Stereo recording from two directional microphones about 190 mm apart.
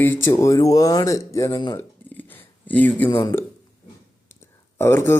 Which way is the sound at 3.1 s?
30° left (ahead or behind).